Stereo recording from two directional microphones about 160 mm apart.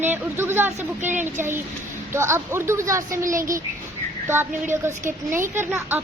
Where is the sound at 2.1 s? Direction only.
15° right (ahead or behind).